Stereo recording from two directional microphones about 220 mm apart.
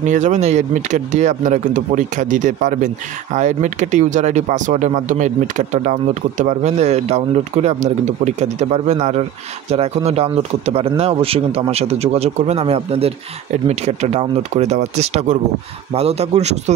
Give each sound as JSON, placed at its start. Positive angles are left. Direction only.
{"t": 0.0, "sound": "speech", "side_deg": -35}